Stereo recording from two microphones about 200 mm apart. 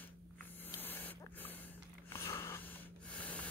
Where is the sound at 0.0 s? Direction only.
10° left (ahead or behind).